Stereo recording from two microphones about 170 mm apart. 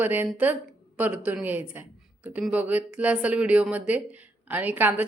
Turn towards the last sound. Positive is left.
turn(degrees=-10)  # may be behind; listen again after turning